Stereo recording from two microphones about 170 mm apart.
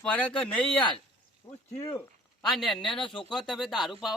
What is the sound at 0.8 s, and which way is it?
Speech, 30° left (ahead or behind).